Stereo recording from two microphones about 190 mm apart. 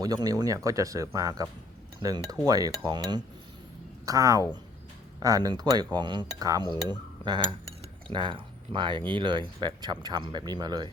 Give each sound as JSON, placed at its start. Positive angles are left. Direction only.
{"t": 0.0, "sound": "speech", "side_deg": -20}
{"t": 8.0, "sound": "speech", "side_deg": -25}